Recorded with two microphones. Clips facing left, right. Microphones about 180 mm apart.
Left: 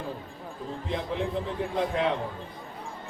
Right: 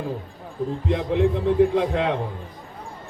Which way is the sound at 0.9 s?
60° right (ahead or behind).